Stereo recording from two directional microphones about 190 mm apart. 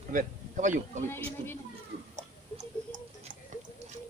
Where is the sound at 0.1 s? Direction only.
40° right (ahead or behind).